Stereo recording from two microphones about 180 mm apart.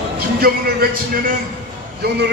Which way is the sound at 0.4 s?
55° right (ahead or behind).